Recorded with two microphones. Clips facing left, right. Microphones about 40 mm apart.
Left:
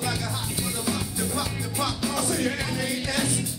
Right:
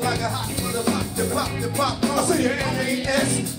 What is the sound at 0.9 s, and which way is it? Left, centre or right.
Music, right.